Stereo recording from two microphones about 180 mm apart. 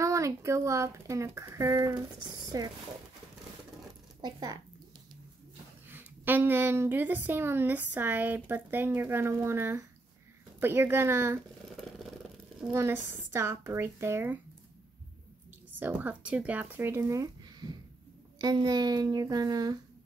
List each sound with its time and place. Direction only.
0.0 s a woman's voice: 15° right (ahead or behind)
4.2 s speech: 20° right (ahead or behind)
5.9 s a woman's voice: 10° right (ahead or behind)
12.7 s a woman's voice: 15° right (ahead or behind)
15.8 s a woman's voice: 10° right (ahead or behind)